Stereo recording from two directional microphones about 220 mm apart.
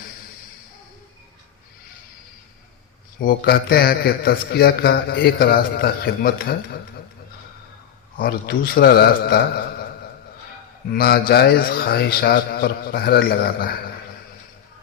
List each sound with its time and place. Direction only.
3.2 s a man's voice: 45° left (ahead or behind)
8.2 s a man's voice: 45° left (ahead or behind)
10.9 s a man's voice: 45° left (ahead or behind)